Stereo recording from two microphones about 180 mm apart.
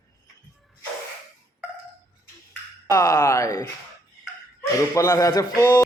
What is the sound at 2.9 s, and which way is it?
Speech, 15° left (ahead or behind).